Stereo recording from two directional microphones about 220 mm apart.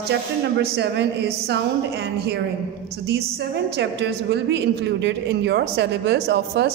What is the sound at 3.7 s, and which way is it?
A woman's voice, 50° right (ahead or behind).